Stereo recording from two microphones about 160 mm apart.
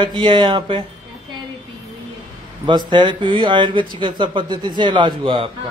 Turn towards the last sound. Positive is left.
turn(degrees=-30)  # may be behind; listen again after turning